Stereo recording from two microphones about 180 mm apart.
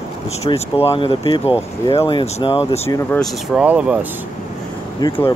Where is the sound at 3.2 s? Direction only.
Centre (ahead or behind).